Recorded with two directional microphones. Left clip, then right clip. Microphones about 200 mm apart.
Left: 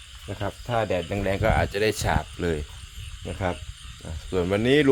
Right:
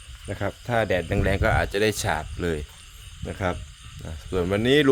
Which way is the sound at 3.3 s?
15° right (ahead or behind).